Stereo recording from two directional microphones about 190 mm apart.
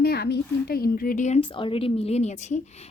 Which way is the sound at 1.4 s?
25° left (ahead or behind).